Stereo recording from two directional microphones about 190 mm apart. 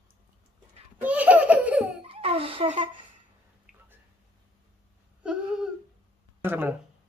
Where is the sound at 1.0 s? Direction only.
5° right (ahead or behind).